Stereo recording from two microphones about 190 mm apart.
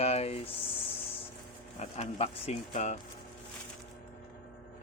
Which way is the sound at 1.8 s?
35° left (ahead or behind).